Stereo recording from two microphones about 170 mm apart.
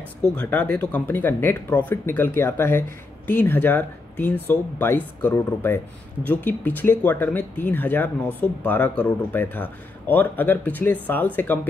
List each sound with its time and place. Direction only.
0.2 s speech: 10° left (ahead or behind)